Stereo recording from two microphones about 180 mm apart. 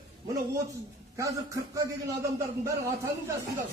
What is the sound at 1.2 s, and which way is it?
A man's voice, 15° right (ahead or behind).